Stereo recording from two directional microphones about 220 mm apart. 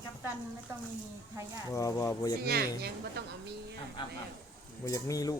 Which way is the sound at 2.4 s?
45° right (ahead or behind).